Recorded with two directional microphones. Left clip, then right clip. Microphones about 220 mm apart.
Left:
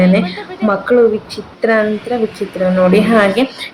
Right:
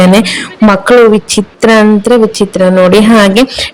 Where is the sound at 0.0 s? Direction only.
55° right (ahead or behind).